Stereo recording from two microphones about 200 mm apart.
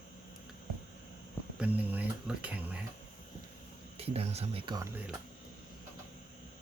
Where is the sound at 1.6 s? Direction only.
10° right (ahead or behind).